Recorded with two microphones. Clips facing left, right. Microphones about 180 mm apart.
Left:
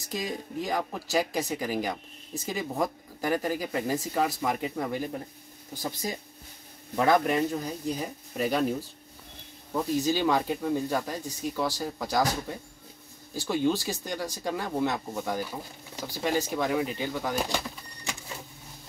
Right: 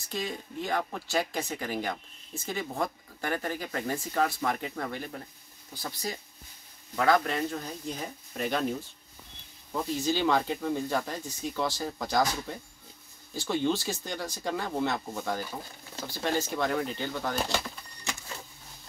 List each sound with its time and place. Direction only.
0.1 s speech: 10° left (ahead or behind)
9.8 s speech: 15° left (ahead or behind)
17.6 s a sound: 5° left (ahead or behind)